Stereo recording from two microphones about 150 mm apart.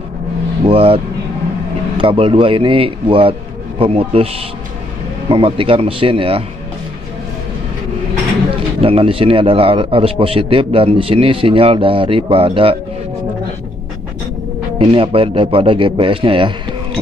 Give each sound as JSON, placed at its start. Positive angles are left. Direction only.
{"t": 0.7, "sound": "a man's voice", "side_deg": -40}
{"t": 5.3, "sound": "a man's voice", "side_deg": -35}
{"t": 8.8, "sound": "a man's voice", "side_deg": -40}
{"t": 14.8, "sound": "a man's voice", "side_deg": -35}